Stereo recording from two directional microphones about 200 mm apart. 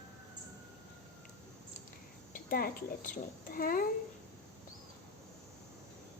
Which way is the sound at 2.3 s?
45° left (ahead or behind).